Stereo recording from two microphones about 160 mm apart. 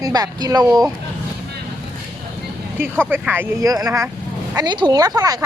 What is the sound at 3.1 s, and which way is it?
Speech, 15° right (ahead or behind).